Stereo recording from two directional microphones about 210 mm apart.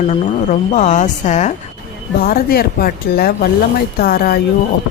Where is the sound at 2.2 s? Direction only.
45° left (ahead or behind).